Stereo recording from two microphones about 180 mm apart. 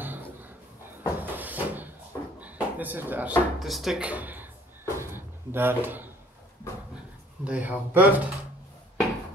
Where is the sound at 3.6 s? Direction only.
Centre (ahead or behind).